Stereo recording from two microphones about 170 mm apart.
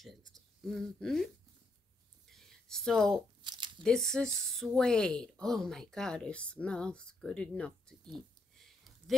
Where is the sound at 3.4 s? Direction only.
25° right (ahead or behind).